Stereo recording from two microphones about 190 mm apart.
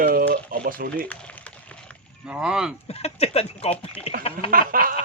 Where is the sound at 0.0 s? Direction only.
50° right (ahead or behind).